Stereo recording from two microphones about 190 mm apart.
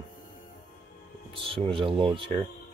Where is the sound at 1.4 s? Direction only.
30° right (ahead or behind).